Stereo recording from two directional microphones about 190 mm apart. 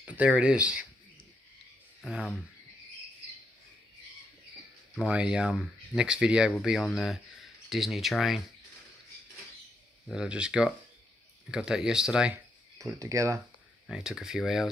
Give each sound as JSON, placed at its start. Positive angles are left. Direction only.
{"t": 0.0, "sound": "speech", "side_deg": -5}
{"t": 2.0, "sound": "speech", "side_deg": 0}
{"t": 4.9, "sound": "speech", "side_deg": -5}
{"t": 10.0, "sound": "speech", "side_deg": -5}
{"t": 12.7, "sound": "speech", "side_deg": -15}
{"t": 13.8, "sound": "speech", "side_deg": -5}